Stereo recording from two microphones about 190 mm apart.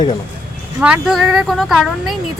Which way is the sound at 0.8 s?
5° right (ahead or behind).